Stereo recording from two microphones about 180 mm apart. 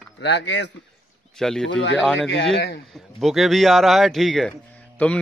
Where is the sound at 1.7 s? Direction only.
85° left.